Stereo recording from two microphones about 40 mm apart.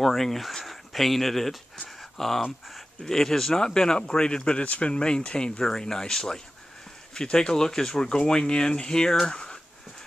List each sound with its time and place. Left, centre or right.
0.0 s speech: centre
1.9 s a sound: centre
3.0 s speech: centre